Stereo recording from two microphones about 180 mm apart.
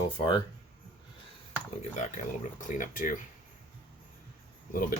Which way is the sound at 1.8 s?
45° left (ahead or behind).